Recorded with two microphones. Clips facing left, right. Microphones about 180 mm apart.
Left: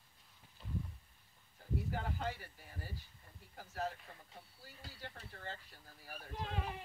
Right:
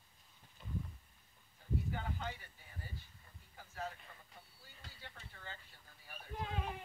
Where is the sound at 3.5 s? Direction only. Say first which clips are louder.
Left 4 dB; 40° left (ahead or behind).